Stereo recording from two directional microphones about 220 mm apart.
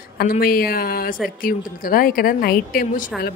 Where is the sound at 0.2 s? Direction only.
40° left (ahead or behind).